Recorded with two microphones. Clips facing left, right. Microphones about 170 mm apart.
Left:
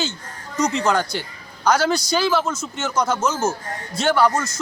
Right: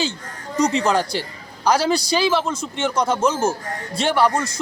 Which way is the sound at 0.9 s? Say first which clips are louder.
Right 1 dB; 30° right (ahead or behind).